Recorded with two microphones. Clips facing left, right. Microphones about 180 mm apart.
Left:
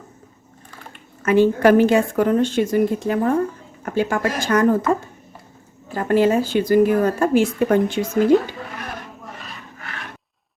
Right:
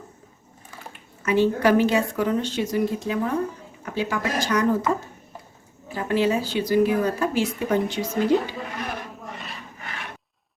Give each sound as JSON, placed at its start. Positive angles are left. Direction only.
{"t": 1.2, "sound": "speech", "side_deg": 50}
{"t": 5.9, "sound": "speech", "side_deg": 50}